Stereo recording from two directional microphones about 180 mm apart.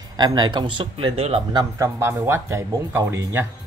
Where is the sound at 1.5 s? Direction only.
20° right (ahead or behind).